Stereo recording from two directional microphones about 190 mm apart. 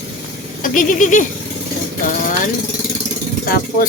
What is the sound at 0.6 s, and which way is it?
Speech, 45° left (ahead or behind).